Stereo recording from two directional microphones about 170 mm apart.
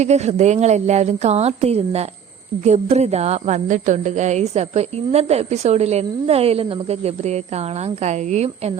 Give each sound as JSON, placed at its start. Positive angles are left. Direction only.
{"t": 0.0, "sound": "speech", "side_deg": -40}